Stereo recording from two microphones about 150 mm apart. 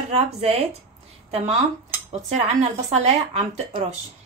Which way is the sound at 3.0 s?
50° right (ahead or behind).